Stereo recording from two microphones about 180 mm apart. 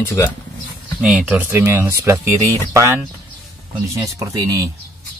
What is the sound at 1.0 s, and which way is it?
Speech, 5° right (ahead or behind).